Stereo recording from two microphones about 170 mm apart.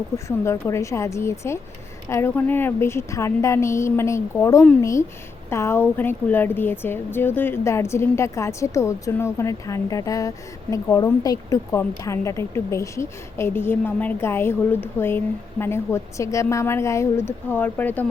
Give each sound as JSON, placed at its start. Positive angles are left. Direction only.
{"t": 0.3, "sound": "speech", "side_deg": 15}